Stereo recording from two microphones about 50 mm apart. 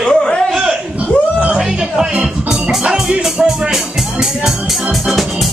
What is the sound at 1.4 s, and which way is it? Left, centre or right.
Music, centre.